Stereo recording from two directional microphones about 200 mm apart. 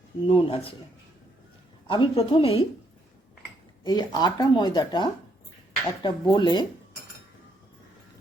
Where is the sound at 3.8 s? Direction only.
20° left (ahead or behind).